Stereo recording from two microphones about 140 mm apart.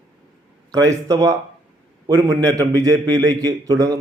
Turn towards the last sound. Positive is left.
turn(degrees=-25)  # may be behind; listen again after turning